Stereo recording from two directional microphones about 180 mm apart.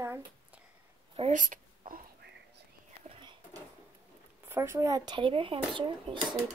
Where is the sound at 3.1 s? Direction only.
25° right (ahead or behind).